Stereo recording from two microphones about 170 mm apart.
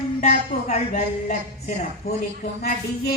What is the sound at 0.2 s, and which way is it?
Music, 40° left (ahead or behind).